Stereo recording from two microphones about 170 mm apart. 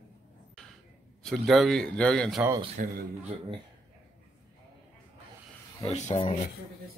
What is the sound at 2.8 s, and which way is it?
Speech, 50° right (ahead or behind).